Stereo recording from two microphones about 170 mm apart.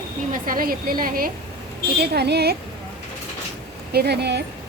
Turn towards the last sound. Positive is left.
turn(degrees=-80)